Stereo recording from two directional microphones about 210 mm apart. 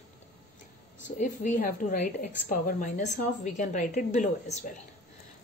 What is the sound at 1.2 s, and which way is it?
A woman's voice, 35° left (ahead or behind).